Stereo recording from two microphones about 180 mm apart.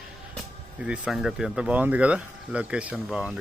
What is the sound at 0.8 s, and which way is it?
Speech, 5° right (ahead or behind).